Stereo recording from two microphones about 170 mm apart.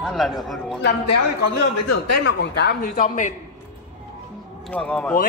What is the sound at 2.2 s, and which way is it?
Speech, 85° left.